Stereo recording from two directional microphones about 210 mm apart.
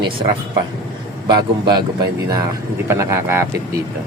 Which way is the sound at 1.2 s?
20° right (ahead or behind).